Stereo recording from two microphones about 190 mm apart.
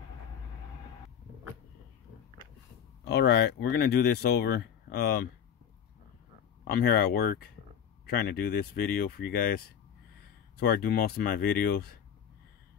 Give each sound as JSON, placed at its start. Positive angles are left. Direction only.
{"t": 3.1, "sound": "speech", "side_deg": 60}
{"t": 6.7, "sound": "speech", "side_deg": 55}
{"t": 10.6, "sound": "speech", "side_deg": 50}